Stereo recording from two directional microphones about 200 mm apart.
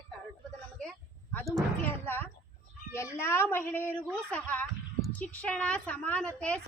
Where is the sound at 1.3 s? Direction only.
10° left (ahead or behind).